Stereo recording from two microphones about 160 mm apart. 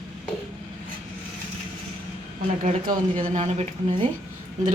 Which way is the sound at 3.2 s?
45° right (ahead or behind).